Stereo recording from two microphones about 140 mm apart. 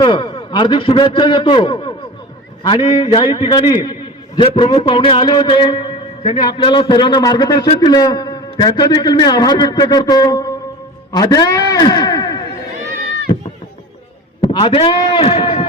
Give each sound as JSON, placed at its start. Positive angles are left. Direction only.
{"t": 0.0, "sound": "a man's voice", "side_deg": 35}
{"t": 14.5, "sound": "a man's voice", "side_deg": 40}